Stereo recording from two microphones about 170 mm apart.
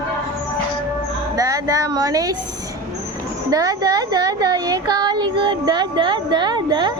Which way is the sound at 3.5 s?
20° right (ahead or behind).